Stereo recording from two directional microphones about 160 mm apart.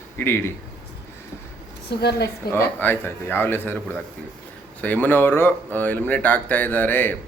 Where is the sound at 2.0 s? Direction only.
90° left.